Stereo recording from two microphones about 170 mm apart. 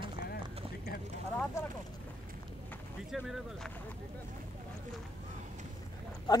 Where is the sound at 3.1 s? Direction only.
Centre (ahead or behind).